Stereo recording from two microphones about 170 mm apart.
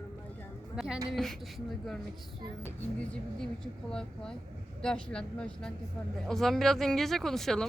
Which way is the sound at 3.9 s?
5° left (ahead or behind).